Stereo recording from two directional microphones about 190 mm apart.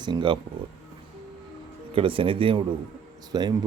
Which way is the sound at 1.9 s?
30° right (ahead or behind).